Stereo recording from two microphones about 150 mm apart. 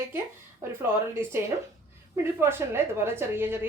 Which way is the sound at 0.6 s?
20° right (ahead or behind).